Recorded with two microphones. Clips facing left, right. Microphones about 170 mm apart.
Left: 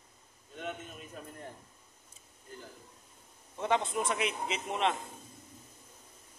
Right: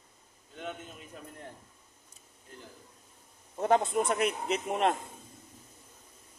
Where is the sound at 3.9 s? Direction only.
50° right (ahead or behind).